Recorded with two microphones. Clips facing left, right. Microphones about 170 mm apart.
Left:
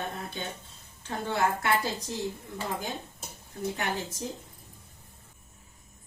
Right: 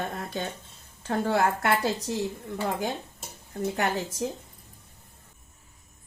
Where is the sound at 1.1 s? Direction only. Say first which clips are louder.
Right 7 dB; 70° right (ahead or behind).